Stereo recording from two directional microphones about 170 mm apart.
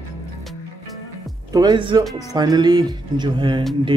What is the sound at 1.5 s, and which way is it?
Speech, 25° right (ahead or behind).